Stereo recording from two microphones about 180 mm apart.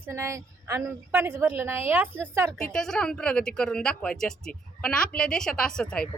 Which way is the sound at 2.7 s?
5° left (ahead or behind).